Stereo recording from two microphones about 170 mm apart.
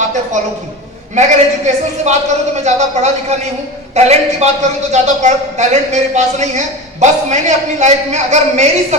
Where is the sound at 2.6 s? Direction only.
40° right (ahead or behind).